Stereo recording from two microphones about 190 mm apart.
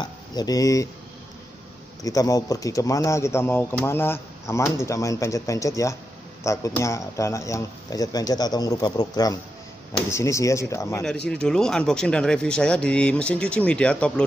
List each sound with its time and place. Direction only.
0.0 s speech: 20° left (ahead or behind)
2.0 s speech: 20° left (ahead or behind)
11.2 s speech: 5° left (ahead or behind)